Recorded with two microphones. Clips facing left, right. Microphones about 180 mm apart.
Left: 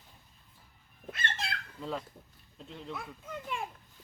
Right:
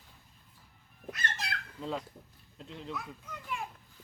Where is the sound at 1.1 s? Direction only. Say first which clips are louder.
Left 1 dB; 25° left (ahead or behind).